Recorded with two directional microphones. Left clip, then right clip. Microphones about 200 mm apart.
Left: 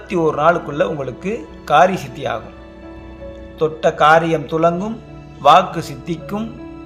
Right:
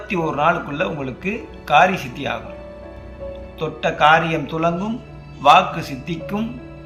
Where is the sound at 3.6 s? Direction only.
60° left (ahead or behind).